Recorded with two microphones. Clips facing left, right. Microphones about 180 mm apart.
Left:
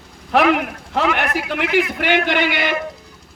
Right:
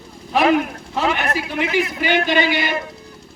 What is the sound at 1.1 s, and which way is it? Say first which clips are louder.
A man's voice: left 1 dB; 65° left (ahead or behind).